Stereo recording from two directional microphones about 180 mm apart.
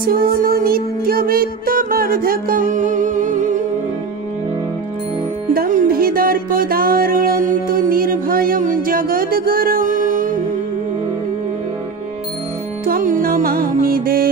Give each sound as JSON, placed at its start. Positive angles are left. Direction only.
{"t": 0.0, "sound": "music", "side_deg": -55}
{"t": 5.5, "sound": "music", "side_deg": -50}
{"t": 12.8, "sound": "music", "side_deg": -50}